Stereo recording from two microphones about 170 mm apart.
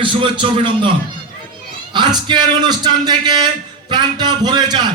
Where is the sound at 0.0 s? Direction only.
30° right (ahead or behind).